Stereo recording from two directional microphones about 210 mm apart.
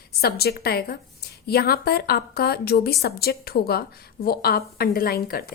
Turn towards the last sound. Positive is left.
turn(degrees=45)  # may be behind; listen again after turning